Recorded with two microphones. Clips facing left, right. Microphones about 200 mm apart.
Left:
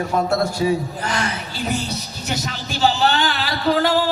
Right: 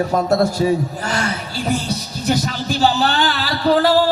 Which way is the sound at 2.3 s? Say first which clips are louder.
Right 8 dB; 40° right (ahead or behind).